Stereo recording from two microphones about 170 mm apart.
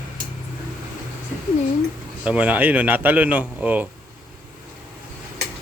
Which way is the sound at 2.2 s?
10° right (ahead or behind).